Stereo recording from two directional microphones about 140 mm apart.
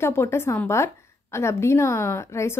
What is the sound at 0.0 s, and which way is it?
A woman's voice, 20° left (ahead or behind).